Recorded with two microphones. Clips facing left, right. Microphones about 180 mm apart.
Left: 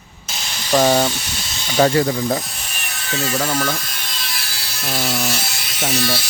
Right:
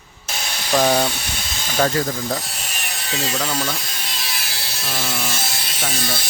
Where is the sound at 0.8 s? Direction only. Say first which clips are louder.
Left 2 dB; 5° left (ahead or behind).